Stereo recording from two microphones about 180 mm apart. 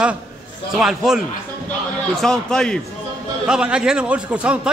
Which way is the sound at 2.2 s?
5° left (ahead or behind).